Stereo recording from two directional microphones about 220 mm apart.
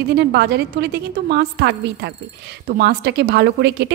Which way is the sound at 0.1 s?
50° right (ahead or behind).